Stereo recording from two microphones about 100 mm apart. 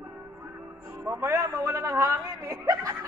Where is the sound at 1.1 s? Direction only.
25° right (ahead or behind).